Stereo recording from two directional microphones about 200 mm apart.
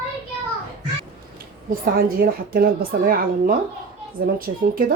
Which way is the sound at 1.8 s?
45° right (ahead or behind).